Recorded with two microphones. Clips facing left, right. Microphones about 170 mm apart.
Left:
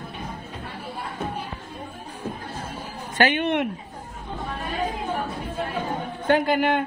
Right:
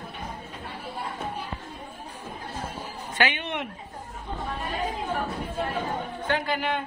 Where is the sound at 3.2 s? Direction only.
50° left (ahead or behind).